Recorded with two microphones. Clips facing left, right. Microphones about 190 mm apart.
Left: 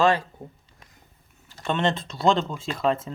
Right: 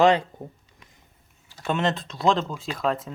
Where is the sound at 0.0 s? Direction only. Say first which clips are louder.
Right 3 dB; 20° right (ahead or behind).